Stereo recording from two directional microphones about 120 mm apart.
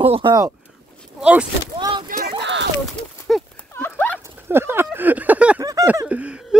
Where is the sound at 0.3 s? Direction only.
25° right (ahead or behind).